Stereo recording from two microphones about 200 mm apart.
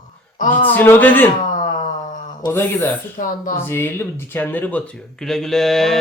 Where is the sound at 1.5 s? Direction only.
40° left (ahead or behind).